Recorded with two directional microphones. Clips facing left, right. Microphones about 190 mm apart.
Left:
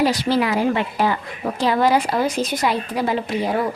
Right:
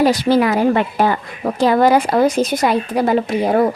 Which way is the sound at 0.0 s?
50° right (ahead or behind).